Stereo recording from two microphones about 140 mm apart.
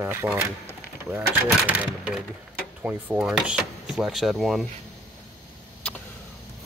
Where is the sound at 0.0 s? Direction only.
15° right (ahead or behind).